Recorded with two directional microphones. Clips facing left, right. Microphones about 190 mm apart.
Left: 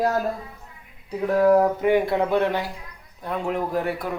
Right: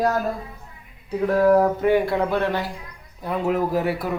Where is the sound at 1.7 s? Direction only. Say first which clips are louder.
Right 1 dB; 15° left (ahead or behind).